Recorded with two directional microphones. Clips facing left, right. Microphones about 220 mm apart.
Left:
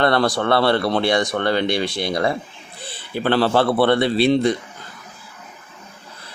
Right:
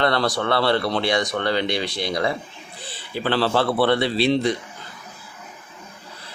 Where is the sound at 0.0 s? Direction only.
55° left (ahead or behind).